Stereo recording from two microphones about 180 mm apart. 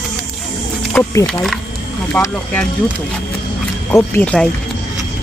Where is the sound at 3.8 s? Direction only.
10° left (ahead or behind).